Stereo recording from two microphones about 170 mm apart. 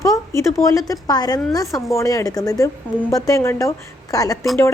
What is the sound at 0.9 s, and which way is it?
A woman's voice, 20° left (ahead or behind).